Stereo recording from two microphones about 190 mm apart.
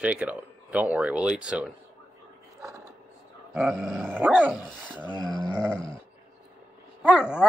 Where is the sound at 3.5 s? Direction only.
Centre (ahead or behind).